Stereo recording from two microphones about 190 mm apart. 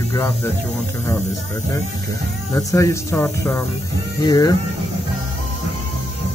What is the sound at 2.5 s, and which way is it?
Speech, 15° left (ahead or behind).